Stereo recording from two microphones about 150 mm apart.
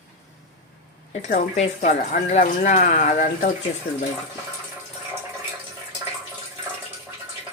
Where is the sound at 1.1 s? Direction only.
55° left (ahead or behind).